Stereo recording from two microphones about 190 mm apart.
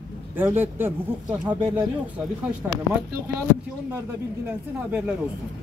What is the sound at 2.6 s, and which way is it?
Speech, 5° right (ahead or behind).